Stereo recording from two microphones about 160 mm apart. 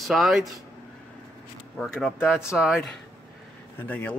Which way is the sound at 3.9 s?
10° left (ahead or behind).